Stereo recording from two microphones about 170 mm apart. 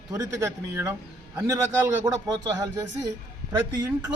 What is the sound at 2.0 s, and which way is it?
Speech, 20° right (ahead or behind).